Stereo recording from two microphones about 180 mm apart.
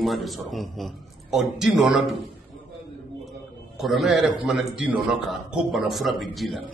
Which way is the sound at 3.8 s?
Centre (ahead or behind).